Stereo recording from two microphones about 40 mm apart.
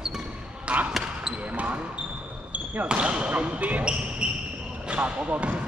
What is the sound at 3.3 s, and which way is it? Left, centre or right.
Speech, right.